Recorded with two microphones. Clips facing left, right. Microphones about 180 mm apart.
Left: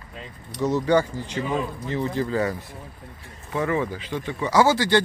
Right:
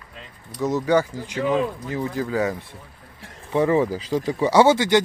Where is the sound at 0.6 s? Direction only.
10° right (ahead or behind).